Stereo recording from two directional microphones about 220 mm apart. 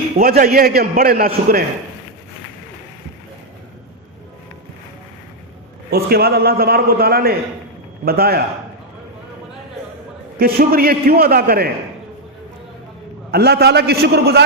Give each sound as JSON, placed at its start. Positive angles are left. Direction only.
{"t": 0.2, "sound": "a man's voice", "side_deg": -40}
{"t": 5.9, "sound": "a man's voice", "side_deg": -45}
{"t": 10.3, "sound": "a man's voice", "side_deg": -45}
{"t": 13.3, "sound": "a man's voice", "side_deg": -45}